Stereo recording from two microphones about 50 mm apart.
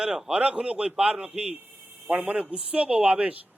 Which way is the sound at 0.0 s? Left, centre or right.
Centre.